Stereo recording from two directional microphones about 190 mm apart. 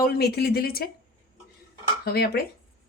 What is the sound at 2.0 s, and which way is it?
Speech, 55° left (ahead or behind).